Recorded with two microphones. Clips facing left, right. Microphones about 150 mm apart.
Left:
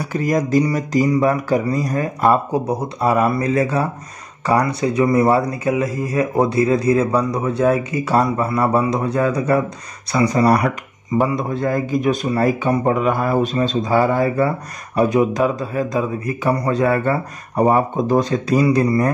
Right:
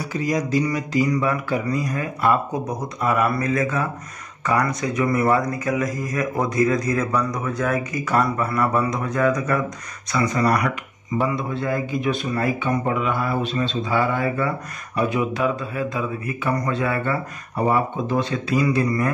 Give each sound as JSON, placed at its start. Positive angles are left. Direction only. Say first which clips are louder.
{"t": 0.1, "sound": "a man's voice", "louder": "left 5 dB", "side_deg": 50}